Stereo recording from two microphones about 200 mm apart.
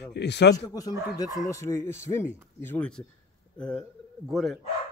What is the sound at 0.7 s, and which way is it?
Speech, 20° left (ahead or behind).